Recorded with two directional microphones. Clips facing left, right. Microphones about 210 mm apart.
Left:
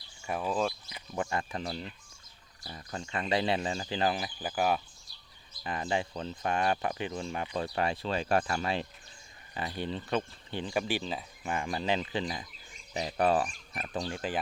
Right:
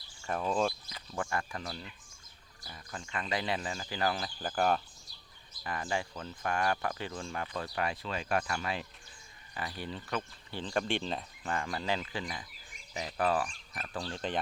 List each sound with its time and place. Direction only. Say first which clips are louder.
0.3 s speech: even; 5° left (ahead or behind)
0.9 s speech: left 3 dB; 20° left (ahead or behind)
4.4 s speech: right 2 dB; 5° left (ahead or behind)
5.6 s speech: left 3 dB; 20° left (ahead or behind)
10.6 s speech: left 1 dB; 10° left (ahead or behind)
11.4 s speech: left 3 dB; 15° left (ahead or behind)